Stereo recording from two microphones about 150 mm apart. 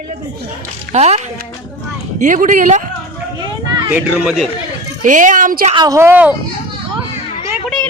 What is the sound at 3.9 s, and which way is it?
Speech, 10° right (ahead or behind).